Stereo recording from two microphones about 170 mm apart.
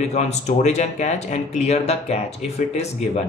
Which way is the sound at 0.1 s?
40° left (ahead or behind).